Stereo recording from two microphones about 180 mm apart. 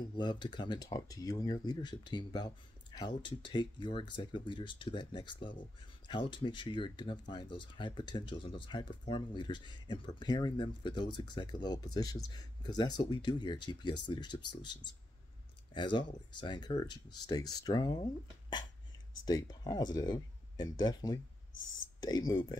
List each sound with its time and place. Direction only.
0.1 s speech: 25° left (ahead or behind)
19.2 s speech: 20° left (ahead or behind)